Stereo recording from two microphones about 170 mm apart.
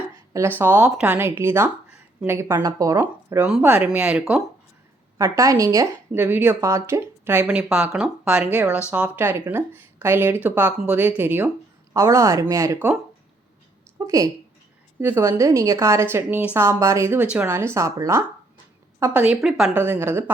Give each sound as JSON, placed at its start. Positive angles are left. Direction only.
{"t": 0.6, "sound": "a woman's voice", "side_deg": -10}
{"t": 5.1, "sound": "a woman's voice", "side_deg": -15}
{"t": 14.0, "sound": "a woman's voice", "side_deg": -20}
{"t": 19.8, "sound": "a woman's voice", "side_deg": -15}